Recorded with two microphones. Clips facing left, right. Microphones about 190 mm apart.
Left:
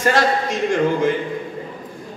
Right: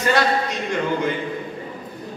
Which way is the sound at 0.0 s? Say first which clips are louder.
Left 2 dB; 45° left (ahead or behind).